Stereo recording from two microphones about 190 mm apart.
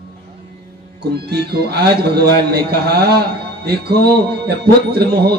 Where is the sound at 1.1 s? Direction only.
60° right (ahead or behind).